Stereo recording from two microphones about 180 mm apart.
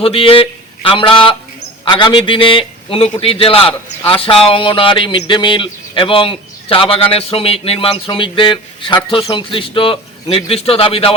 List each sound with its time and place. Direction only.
0.0 s a man's voice: 30° left (ahead or behind)